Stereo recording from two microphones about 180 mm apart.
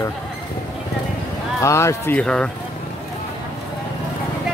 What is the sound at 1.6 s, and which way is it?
Speech, 15° left (ahead or behind).